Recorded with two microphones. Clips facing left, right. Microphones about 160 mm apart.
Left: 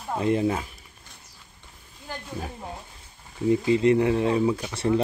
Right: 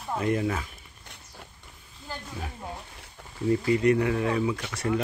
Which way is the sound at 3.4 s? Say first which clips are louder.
Left 2 dB; 20° left (ahead or behind).